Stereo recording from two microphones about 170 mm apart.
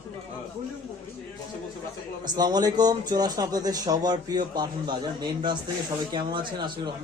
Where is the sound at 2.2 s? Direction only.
25° right (ahead or behind).